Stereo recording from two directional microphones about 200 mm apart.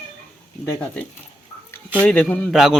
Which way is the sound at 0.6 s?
15° left (ahead or behind).